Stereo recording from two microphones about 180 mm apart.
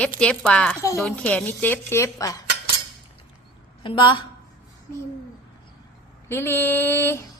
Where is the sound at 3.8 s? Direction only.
25° left (ahead or behind).